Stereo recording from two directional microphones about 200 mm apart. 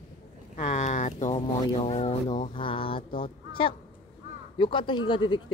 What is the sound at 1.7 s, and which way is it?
Speech, 35° left (ahead or behind).